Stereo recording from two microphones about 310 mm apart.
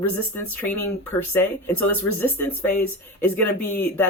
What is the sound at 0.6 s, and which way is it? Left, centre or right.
Speech, left.